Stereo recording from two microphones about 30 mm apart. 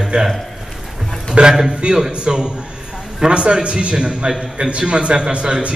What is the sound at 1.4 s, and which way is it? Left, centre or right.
Speech, right.